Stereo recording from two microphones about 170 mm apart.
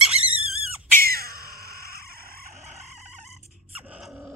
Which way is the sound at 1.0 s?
60° right (ahead or behind).